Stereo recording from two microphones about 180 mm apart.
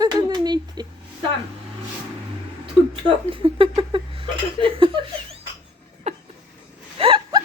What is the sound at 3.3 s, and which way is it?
A woman's voice, 30° right (ahead or behind).